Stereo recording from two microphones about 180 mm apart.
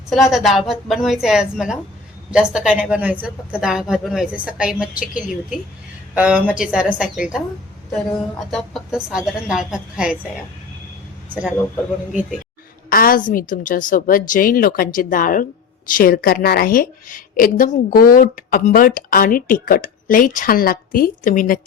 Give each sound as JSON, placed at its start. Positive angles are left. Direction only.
{"t": 0.1, "sound": "a woman's voice", "side_deg": 0}
{"t": 12.9, "sound": "a woman's voice", "side_deg": 50}